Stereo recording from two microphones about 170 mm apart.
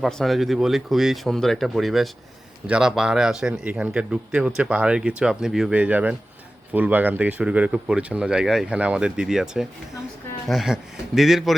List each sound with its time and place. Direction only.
0.0 s speech: centre (ahead or behind)